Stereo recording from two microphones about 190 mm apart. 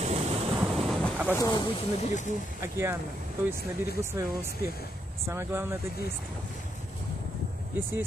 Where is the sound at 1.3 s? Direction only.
15° left (ahead or behind).